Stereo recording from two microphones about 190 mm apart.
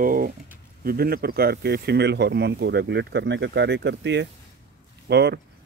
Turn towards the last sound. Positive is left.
turn(degrees=-60)  # may be behind; listen again after turning